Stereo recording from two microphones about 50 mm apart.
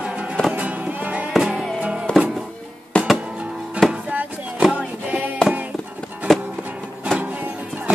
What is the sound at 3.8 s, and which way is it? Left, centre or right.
Music, right.